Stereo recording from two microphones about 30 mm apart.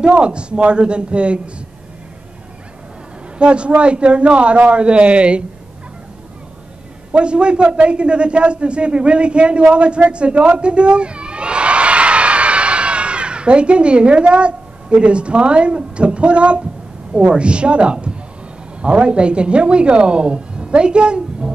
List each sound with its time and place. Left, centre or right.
0.0 s a woman's voice: right
3.3 s a woman's voice: right
7.1 s a man's voice: right